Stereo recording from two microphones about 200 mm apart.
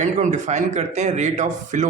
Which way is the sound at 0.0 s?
35° right (ahead or behind).